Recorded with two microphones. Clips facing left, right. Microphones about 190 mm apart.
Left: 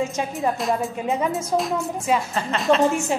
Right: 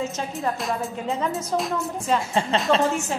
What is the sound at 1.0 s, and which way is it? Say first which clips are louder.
Speech: left 2 dB; 15° left (ahead or behind).